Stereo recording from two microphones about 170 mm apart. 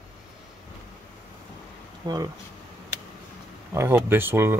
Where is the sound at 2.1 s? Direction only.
25° right (ahead or behind).